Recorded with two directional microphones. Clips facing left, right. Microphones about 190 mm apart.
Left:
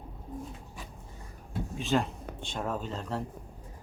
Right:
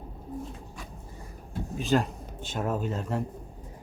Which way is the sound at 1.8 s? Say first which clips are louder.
Right 3 dB; centre (ahead or behind).